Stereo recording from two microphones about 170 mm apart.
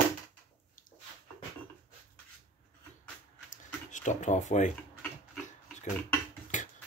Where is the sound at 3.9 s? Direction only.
45° left (ahead or behind).